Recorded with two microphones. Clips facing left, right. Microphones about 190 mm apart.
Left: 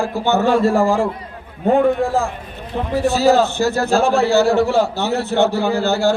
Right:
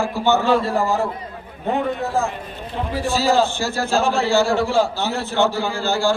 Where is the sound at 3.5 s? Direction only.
60° left (ahead or behind).